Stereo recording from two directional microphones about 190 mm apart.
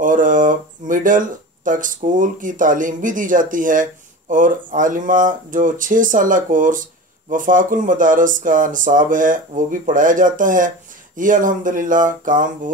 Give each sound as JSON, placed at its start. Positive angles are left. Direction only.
{"t": 0.0, "sound": "speech", "side_deg": -45}